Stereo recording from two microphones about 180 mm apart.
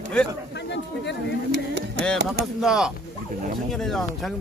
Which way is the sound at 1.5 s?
70° right (ahead or behind).